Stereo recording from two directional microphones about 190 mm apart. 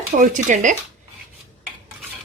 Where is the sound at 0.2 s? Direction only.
40° right (ahead or behind).